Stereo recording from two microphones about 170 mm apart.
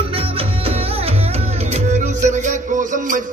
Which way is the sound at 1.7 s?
45° right (ahead or behind).